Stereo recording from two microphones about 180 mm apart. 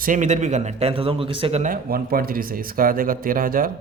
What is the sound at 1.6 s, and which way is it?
Speech, 50° right (ahead or behind).